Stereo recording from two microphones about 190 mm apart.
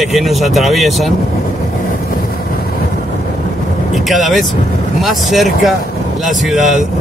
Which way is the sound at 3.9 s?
Centre (ahead or behind).